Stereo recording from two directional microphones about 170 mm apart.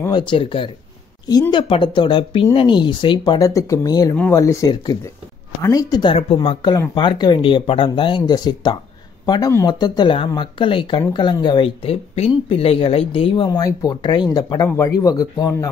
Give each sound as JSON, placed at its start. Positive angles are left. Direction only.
{"t": 0.0, "sound": "speech", "side_deg": 25}